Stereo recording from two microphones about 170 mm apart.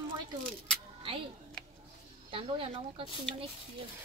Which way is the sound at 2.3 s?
30° right (ahead or behind).